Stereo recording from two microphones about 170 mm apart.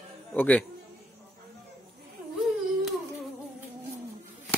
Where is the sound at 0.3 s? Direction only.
10° left (ahead or behind).